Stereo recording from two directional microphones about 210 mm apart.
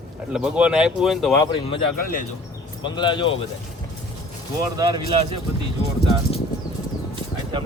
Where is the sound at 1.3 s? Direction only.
20° left (ahead or behind).